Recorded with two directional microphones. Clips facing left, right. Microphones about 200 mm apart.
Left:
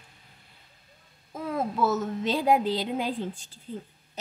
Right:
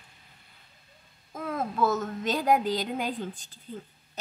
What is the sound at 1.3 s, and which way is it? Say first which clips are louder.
Speech: left 2 dB; 10° left (ahead or behind).